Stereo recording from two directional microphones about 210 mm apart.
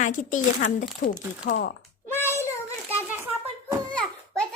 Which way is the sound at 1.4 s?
50° left (ahead or behind).